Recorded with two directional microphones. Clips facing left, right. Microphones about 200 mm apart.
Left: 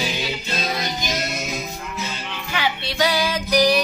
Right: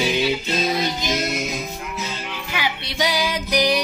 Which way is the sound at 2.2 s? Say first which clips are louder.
Left 3 dB; 10° right (ahead or behind).